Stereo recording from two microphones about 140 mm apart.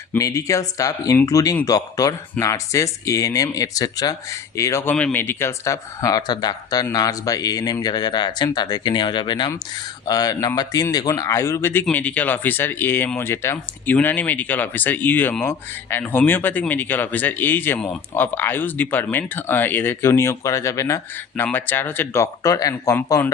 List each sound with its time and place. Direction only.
0.2 s speech: 25° left (ahead or behind)